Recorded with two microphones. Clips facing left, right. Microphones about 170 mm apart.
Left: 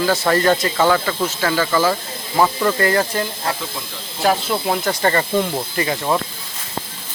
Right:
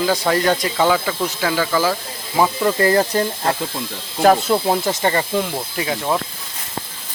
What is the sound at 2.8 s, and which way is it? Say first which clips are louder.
Speech: right 5 dB; 30° right (ahead or behind).